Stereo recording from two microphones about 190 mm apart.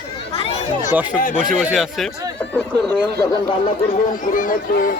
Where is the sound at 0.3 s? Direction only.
40° left (ahead or behind).